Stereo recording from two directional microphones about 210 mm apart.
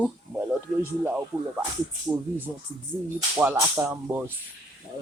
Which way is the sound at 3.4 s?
10° right (ahead or behind).